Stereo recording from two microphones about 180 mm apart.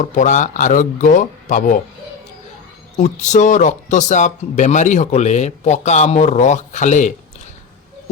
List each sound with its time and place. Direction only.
0.0 s speech: 45° left (ahead or behind)
3.0 s speech: 40° left (ahead or behind)